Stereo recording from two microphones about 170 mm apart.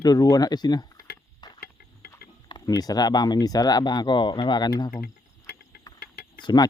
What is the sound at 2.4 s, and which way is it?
Speech, 25° left (ahead or behind).